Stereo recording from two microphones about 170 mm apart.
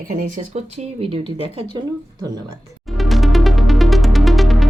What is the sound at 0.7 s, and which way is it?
Speech, 35° right (ahead or behind).